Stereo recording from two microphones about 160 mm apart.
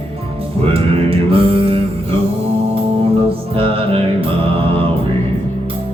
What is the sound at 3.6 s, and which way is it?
Music, 35° right (ahead or behind).